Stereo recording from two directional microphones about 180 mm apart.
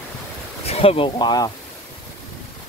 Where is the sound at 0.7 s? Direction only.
30° left (ahead or behind).